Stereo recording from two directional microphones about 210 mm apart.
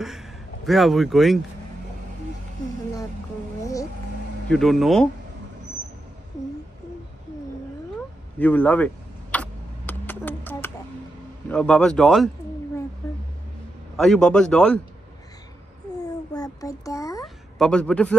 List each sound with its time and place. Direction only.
0.0 s speech: centre (ahead or behind)
4.5 s speech: centre (ahead or behind)
8.4 s vehicle: 10° left (ahead or behind)
11.4 s speech: 5° left (ahead or behind)
13.9 s speech: centre (ahead or behind)
16.0 s a sound: 20° left (ahead or behind)
17.6 s speech: 5° left (ahead or behind)